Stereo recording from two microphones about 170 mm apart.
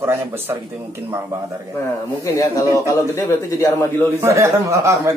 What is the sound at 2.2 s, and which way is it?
A man's voice, 20° left (ahead or behind).